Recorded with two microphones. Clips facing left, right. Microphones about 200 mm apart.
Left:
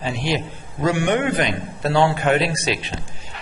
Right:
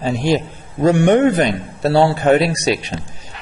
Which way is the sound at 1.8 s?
35° right (ahead or behind).